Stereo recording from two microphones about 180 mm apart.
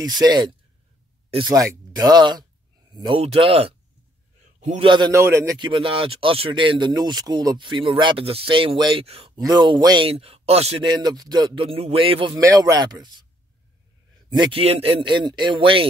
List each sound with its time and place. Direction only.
0.0 s a man's voice: 20° right (ahead or behind); by 4.8 s 40° right (ahead or behind)
4.8 s speech: 25° right (ahead or behind)
5.1 s speech: 15° right (ahead or behind)
14.3 s speech: 25° right (ahead or behind)